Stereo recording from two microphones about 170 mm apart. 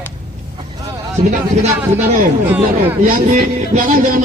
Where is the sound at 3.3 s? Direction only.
50° right (ahead or behind).